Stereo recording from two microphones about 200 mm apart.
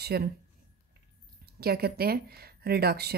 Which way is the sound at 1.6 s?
50° right (ahead or behind).